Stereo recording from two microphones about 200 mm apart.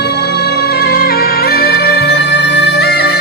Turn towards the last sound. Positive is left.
turn(degrees=55)  # may be behind; listen again after turning